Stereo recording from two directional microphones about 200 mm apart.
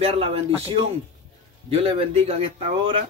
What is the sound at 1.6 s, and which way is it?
Speech, 30° right (ahead or behind).